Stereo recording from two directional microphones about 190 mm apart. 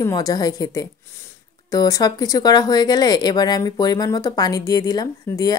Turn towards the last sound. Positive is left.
turn(degrees=20)  # may be behind; listen again after turning